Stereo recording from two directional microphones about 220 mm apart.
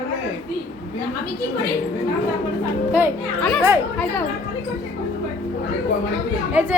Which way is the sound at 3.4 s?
5° left (ahead or behind).